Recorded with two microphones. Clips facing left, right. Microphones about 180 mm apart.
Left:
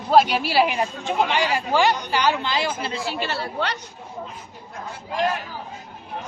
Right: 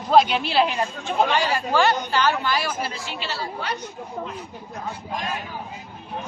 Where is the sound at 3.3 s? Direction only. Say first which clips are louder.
Left 3 dB; 65° left (ahead or behind).